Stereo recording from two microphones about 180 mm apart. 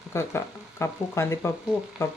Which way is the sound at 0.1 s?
15° left (ahead or behind).